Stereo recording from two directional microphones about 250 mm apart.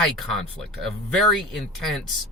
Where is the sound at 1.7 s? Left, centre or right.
Centre.